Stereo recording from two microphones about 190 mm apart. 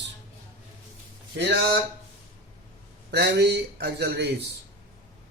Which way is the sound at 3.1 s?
60° right (ahead or behind).